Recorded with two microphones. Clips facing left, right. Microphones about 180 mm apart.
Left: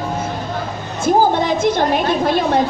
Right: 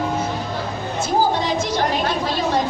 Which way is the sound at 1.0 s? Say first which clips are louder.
Left 5 dB; 55° left (ahead or behind).